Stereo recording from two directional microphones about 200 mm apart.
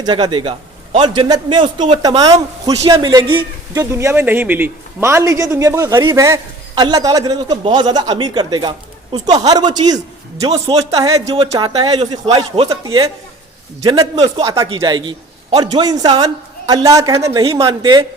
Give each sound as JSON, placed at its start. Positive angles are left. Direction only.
{"t": 0.0, "sound": "a man's voice", "side_deg": -25}